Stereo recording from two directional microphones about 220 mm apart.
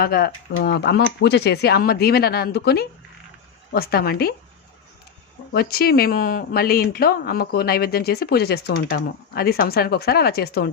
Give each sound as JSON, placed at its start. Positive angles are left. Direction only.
{"t": 0.0, "sound": "speech", "side_deg": 45}
{"t": 5.5, "sound": "speech", "side_deg": 45}